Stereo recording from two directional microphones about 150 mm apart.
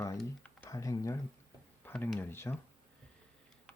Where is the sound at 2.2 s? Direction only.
15° left (ahead or behind).